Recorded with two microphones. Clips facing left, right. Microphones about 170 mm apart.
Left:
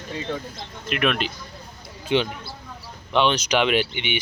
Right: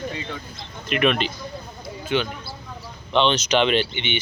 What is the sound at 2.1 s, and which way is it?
Speech, 25° left (ahead or behind).